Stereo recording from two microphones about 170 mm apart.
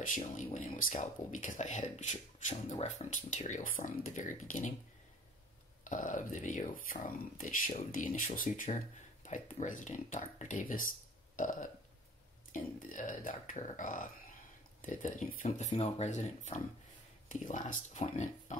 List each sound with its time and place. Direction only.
0.2 s speech: 40° left (ahead or behind)
5.9 s speech: 50° left (ahead or behind)
15.2 s speech: 40° left (ahead or behind)